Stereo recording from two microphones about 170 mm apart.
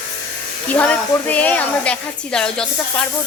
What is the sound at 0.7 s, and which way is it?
A woman's voice, 10° left (ahead or behind).